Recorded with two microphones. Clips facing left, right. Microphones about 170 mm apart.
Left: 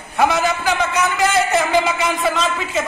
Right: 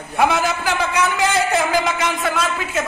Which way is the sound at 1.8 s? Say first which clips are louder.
Left 2 dB; centre (ahead or behind).